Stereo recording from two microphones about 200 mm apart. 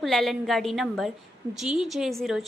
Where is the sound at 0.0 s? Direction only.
Centre (ahead or behind).